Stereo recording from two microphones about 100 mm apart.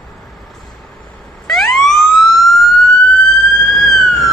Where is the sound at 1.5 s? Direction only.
5° left (ahead or behind).